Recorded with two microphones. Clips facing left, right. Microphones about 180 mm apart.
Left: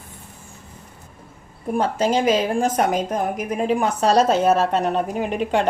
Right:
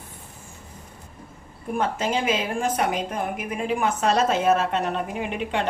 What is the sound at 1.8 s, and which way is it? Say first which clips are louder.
A woman's voice: left 5 dB; 40° left (ahead or behind).